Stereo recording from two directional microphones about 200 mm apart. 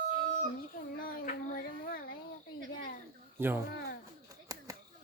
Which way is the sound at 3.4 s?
10° right (ahead or behind).